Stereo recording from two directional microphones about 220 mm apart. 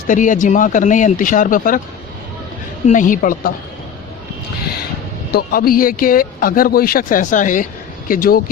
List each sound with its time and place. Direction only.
0.1 s speech: 35° left (ahead or behind)
2.8 s speech: 35° left (ahead or behind)
5.3 s speech: 45° left (ahead or behind)